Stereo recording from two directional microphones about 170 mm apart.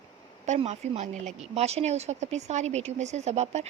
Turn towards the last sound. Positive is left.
turn(degrees=-40)  # may be behind; listen again after turning